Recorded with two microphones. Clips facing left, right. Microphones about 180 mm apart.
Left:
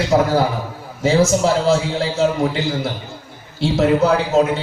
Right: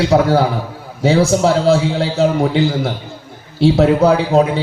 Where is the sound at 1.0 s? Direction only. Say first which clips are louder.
Right 2 dB; 60° right (ahead or behind).